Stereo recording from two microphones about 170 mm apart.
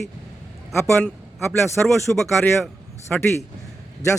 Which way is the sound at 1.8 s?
Centre (ahead or behind).